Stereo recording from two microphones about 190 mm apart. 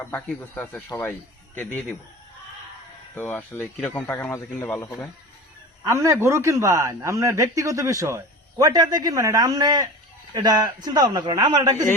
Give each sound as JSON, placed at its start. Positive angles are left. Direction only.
{"t": 0.0, "sound": "speech", "side_deg": 10}
{"t": 3.2, "sound": "speech", "side_deg": 10}
{"t": 5.8, "sound": "a man's voice", "side_deg": -15}